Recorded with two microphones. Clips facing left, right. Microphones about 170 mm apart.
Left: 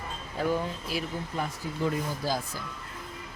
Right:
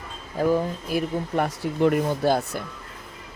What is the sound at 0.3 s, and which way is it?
Speech, 40° right (ahead or behind).